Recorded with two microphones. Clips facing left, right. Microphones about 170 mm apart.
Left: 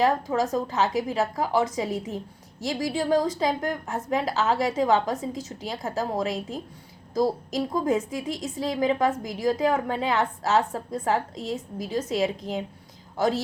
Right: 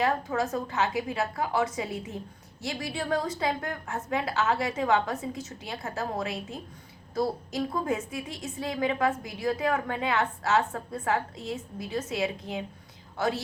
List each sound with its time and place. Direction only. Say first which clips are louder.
0.3 s a woman's voice: left 4 dB; 40° left (ahead or behind)